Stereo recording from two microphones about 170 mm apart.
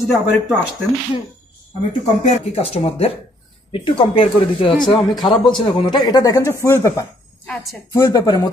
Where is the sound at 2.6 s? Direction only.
35° left (ahead or behind).